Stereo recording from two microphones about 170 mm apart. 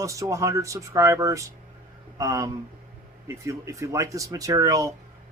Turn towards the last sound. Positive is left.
turn(degrees=-20)  # may be behind; listen again after turning